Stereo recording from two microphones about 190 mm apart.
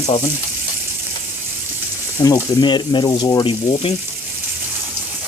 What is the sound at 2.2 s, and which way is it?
Speech, 20° left (ahead or behind).